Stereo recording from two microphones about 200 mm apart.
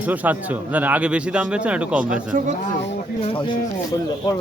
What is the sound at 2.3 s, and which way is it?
Speech, 40° right (ahead or behind).